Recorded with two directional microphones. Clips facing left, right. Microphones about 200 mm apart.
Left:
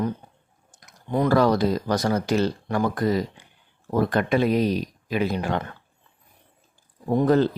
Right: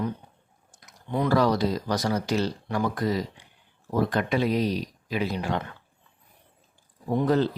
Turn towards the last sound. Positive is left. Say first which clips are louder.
# left 4 dB
turn(degrees=50)  # may be behind; listen again after turning